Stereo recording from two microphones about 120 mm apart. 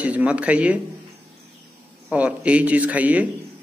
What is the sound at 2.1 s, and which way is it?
Speech, 10° right (ahead or behind).